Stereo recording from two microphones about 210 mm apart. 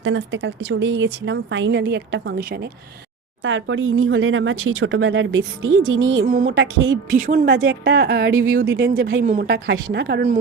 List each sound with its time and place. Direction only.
0.0 s speech: 65° right (ahead or behind); by 2.6 s 50° right (ahead or behind)
3.4 s speech: 70° right (ahead or behind)
6.4 s speech: 65° right (ahead or behind)
7.1 s a woman's voice: 40° right (ahead or behind)
8.3 s speech: 75° right (ahead or behind)
8.7 s speech: 60° right (ahead or behind)